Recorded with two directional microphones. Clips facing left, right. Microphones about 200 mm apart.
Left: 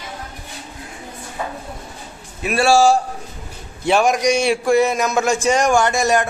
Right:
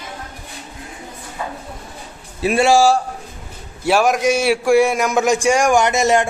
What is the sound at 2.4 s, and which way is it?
Speech, 20° right (ahead or behind).